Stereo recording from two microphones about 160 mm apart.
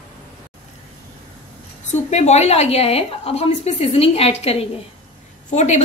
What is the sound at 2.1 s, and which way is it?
A woman's voice, 45° left (ahead or behind).